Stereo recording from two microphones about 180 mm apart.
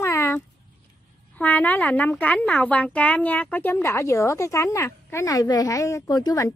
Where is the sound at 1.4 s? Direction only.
10° left (ahead or behind).